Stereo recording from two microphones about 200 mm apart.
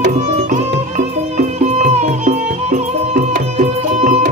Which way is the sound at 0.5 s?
35° right (ahead or behind).